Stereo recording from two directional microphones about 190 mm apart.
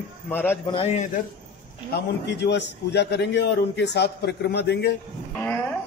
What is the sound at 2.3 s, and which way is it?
A man's voice, 65° left (ahead or behind).